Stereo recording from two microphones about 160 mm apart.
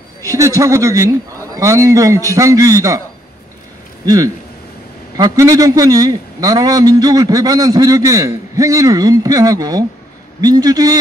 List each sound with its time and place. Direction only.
0.2 s a man's voice: 20° right (ahead or behind)
4.0 s a man's voice: 25° right (ahead or behind)